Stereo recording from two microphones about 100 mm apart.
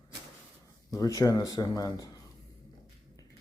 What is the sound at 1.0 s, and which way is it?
Speech, 35° left (ahead or behind).